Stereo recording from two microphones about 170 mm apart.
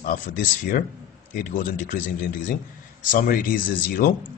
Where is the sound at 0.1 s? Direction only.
55° left (ahead or behind).